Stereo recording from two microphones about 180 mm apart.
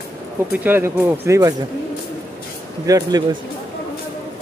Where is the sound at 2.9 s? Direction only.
20° right (ahead or behind).